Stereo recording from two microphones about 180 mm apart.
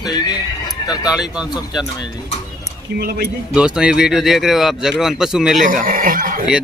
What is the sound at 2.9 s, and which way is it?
Speech, 60° right (ahead or behind).